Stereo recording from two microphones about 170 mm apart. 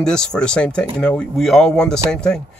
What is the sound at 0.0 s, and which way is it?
Speech, 5° left (ahead or behind).